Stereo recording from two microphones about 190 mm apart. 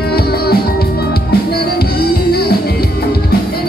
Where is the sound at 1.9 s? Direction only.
55° left (ahead or behind).